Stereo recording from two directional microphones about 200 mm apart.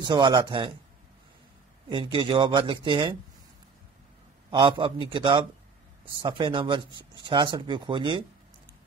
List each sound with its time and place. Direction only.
0.0 s speech: 20° right (ahead or behind)
1.9 s speech: 25° right (ahead or behind)
4.5 s speech: 25° right (ahead or behind)